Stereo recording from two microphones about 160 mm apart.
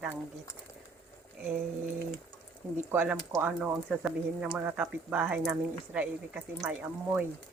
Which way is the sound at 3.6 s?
5° right (ahead or behind).